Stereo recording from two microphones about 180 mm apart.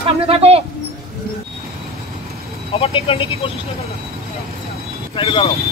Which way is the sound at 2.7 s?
30° left (ahead or behind).